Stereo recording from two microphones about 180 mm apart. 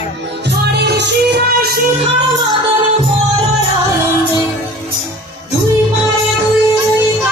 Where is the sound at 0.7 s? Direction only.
65° right (ahead or behind).